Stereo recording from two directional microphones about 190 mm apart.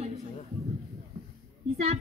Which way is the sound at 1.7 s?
35° right (ahead or behind).